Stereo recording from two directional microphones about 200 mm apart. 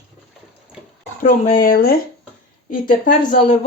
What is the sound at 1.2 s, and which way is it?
Speech, 40° left (ahead or behind).